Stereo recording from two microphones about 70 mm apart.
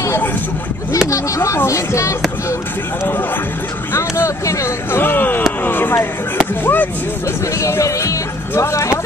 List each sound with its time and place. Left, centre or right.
1.1 s speech: left
3.9 s speech: left
7.6 s speech: left